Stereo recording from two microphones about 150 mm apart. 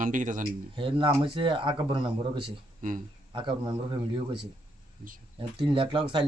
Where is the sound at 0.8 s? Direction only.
35° right (ahead or behind).